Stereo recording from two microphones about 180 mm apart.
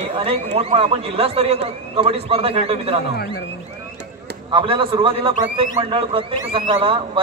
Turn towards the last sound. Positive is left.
turn(degrees=-30)  # may be behind; listen again after turning